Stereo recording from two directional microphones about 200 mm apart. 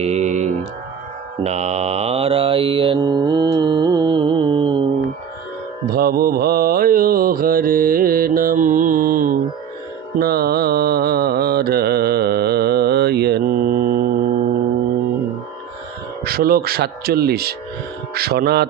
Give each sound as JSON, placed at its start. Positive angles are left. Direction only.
{"t": 0.0, "sound": "mantra", "side_deg": -35}
{"t": 5.9, "sound": "mantra", "side_deg": -50}
{"t": 16.3, "sound": "speech", "side_deg": -50}